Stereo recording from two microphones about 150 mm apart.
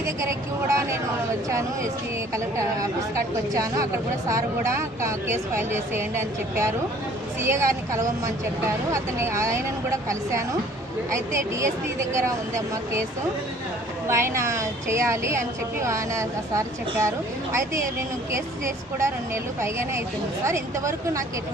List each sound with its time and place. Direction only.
0.0 s a woman's voice: 20° right (ahead or behind)
14.1 s a woman's voice: 20° right (ahead or behind)